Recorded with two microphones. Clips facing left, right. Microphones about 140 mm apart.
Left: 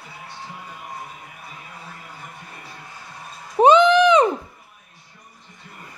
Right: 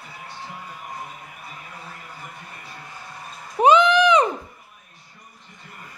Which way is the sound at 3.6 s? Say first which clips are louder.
Left 3 dB; 25° left (ahead or behind).